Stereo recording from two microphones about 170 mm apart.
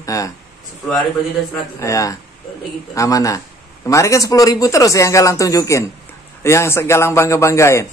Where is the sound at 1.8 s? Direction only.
20° left (ahead or behind).